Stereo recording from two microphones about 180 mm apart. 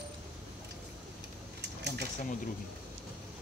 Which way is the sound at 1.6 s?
70° right (ahead or behind).